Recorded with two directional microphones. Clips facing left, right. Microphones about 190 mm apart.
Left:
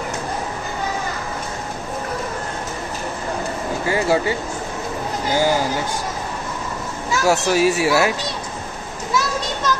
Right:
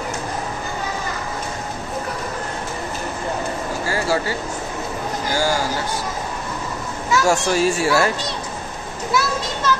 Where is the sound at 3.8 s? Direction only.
20° left (ahead or behind).